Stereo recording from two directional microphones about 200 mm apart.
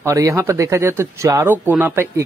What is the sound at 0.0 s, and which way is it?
A man's voice, 15° right (ahead or behind).